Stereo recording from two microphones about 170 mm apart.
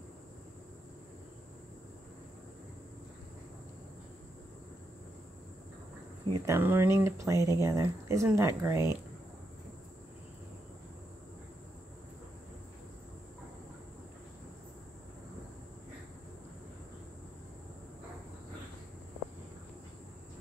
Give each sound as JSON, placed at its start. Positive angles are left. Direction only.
{"t": 6.3, "sound": "speech", "side_deg": -15}